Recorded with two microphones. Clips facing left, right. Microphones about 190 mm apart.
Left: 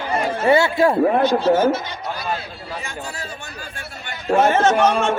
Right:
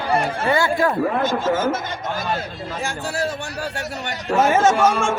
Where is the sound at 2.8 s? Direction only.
90° right.